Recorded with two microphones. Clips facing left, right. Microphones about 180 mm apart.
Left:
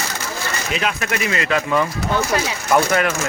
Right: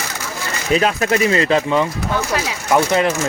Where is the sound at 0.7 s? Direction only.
35° right (ahead or behind).